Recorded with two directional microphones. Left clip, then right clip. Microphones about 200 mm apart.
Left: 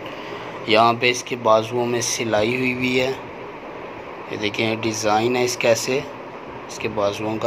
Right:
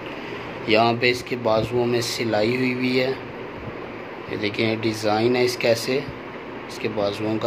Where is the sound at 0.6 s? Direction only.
10° right (ahead or behind).